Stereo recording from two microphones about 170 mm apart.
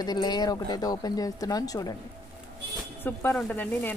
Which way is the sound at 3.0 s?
10° left (ahead or behind).